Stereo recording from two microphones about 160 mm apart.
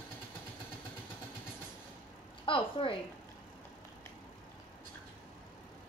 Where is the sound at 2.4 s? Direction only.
35° left (ahead or behind).